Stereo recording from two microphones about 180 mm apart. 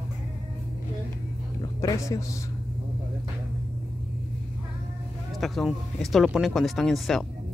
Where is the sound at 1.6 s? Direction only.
20° left (ahead or behind).